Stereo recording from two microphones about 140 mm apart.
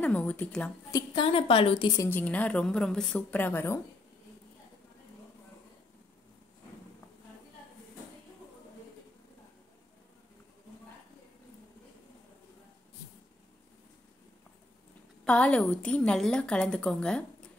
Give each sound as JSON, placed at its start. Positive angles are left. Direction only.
{"t": 0.0, "sound": "a woman's voice", "side_deg": 10}
{"t": 0.9, "sound": "a woman's voice", "side_deg": 35}
{"t": 2.0, "sound": "a woman's voice", "side_deg": 15}
{"t": 15.2, "sound": "a woman's voice", "side_deg": 10}